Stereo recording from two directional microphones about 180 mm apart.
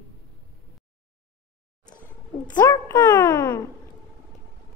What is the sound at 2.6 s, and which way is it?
A woman's voice, 20° left (ahead or behind).